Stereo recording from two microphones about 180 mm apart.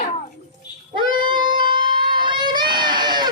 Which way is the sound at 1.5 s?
25° right (ahead or behind).